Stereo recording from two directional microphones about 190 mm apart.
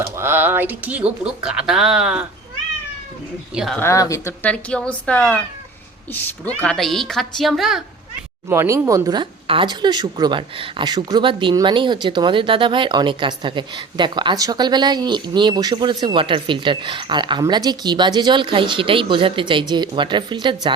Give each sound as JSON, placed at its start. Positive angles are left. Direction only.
{"t": 0.2, "sound": "speech", "side_deg": -10}
{"t": 3.5, "sound": "speech", "side_deg": -5}
{"t": 3.8, "sound": "speech", "side_deg": 15}
{"t": 8.4, "sound": "a woman's voice", "side_deg": -15}